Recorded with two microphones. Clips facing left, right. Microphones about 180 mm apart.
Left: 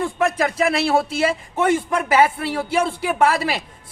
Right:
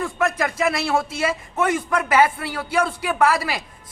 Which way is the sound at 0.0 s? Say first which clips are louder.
Left 2 dB; 30° left (ahead or behind).